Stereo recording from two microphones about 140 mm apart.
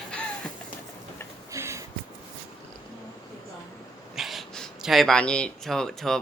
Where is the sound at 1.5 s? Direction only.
20° right (ahead or behind).